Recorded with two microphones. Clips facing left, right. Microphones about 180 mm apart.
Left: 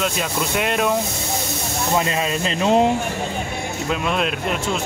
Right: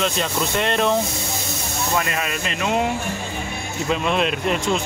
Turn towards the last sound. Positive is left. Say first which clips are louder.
# right 2 dB
turn(degrees=0)  # may be behind; listen again after turning